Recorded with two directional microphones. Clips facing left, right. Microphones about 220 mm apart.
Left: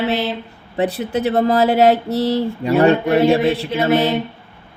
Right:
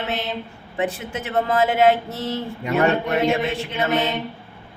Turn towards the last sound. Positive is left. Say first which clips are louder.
# left 6 dB
turn(degrees=35)  # may be behind; listen again after turning